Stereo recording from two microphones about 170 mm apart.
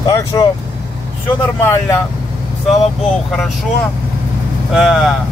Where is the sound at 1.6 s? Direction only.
15° left (ahead or behind).